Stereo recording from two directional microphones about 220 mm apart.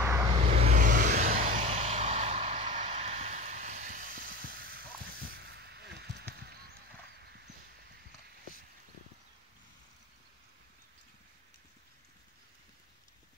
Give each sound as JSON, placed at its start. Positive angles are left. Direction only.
{"t": 0.0, "sound": "vehicle", "side_deg": -15}
{"t": 0.4, "sound": "vehicle", "side_deg": -30}
{"t": 4.3, "sound": "a sound", "side_deg": -45}